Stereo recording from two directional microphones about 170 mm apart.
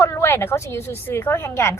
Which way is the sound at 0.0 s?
15° left (ahead or behind).